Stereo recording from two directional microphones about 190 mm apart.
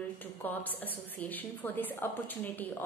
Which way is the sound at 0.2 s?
10° left (ahead or behind).